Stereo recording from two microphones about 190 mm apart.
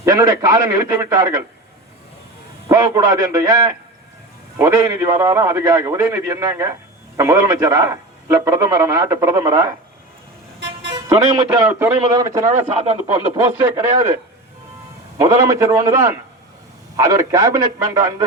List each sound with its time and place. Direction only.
0.0 s a man's voice: 20° right (ahead or behind)
2.6 s a man's voice: 20° right (ahead or behind)
10.9 s a man's voice: 20° right (ahead or behind)
15.2 s a man's voice: 15° right (ahead or behind)